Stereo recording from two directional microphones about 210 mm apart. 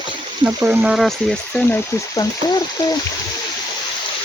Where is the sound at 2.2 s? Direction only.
15° left (ahead or behind).